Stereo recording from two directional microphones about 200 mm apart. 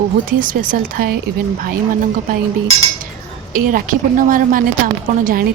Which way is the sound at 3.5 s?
45° right (ahead or behind).